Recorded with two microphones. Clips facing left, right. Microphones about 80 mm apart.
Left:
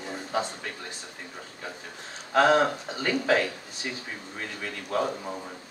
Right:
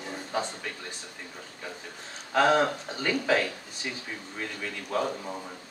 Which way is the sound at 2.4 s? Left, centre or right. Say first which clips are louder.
Left 2 dB; centre.